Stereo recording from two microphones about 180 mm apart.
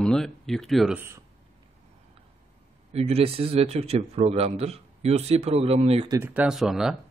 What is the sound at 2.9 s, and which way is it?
Speech, 35° right (ahead or behind).